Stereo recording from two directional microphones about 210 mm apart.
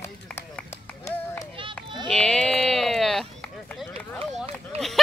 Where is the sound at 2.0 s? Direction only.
5° left (ahead or behind).